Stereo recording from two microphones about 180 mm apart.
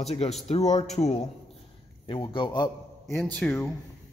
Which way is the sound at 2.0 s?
25° left (ahead or behind).